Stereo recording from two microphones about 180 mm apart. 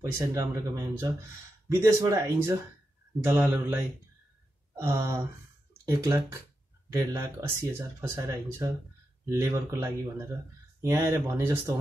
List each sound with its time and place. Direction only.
0.0 s speech: 15° right (ahead or behind)
4.7 s speech: 15° right (ahead or behind)